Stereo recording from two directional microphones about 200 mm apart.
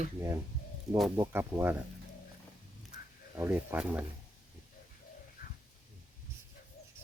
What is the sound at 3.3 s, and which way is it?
Speech, 10° right (ahead or behind).